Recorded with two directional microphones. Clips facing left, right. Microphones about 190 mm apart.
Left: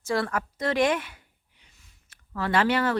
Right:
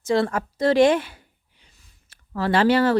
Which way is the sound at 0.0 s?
25° right (ahead or behind).